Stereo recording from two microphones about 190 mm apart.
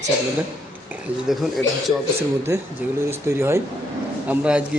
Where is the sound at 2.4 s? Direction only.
15° right (ahead or behind).